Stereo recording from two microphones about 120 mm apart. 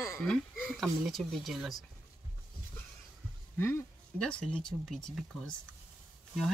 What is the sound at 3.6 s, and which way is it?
Speech, 20° left (ahead or behind).